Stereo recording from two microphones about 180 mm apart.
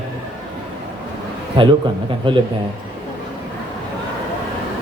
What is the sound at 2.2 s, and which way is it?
Mantra, 25° right (ahead or behind).